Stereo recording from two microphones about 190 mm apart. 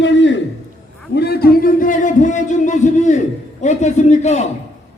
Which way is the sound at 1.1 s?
60° left (ahead or behind).